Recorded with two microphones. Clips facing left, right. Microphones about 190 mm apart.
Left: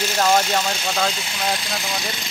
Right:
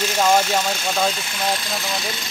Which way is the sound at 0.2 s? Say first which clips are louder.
Right 1 dB; 10° right (ahead or behind).